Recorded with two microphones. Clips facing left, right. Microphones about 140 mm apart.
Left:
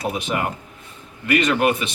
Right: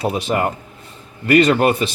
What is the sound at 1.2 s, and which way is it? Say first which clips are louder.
Speech: right 5 dB; 35° right (ahead or behind).